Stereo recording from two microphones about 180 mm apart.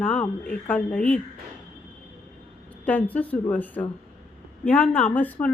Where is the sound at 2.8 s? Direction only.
10° left (ahead or behind).